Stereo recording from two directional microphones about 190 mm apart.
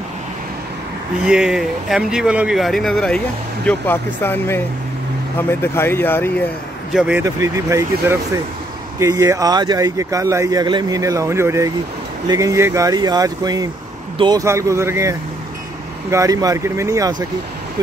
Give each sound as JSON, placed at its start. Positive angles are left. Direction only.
{"t": 1.2, "sound": "speech", "side_deg": -5}
{"t": 6.9, "sound": "speech", "side_deg": -5}